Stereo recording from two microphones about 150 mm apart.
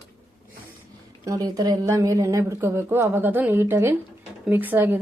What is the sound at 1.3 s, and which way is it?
Speech, 25° right (ahead or behind).